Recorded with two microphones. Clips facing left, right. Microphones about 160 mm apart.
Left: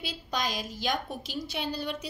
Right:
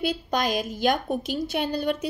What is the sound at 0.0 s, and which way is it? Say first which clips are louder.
A woman's voice: right 8 dB; 55° right (ahead or behind).